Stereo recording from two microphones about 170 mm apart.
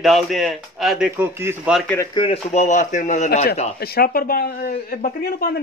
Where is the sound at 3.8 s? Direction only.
65° left (ahead or behind).